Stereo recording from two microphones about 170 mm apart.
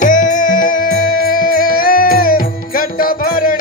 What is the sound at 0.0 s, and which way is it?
Music, 50° left (ahead or behind).